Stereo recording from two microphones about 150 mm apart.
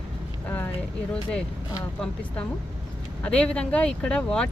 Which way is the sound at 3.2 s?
5° left (ahead or behind).